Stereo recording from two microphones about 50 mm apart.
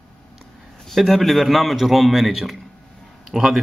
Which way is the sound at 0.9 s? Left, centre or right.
Centre.